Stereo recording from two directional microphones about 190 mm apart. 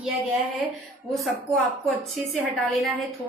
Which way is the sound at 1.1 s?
Centre (ahead or behind).